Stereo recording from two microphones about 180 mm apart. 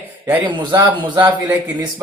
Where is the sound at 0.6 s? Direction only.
25° right (ahead or behind).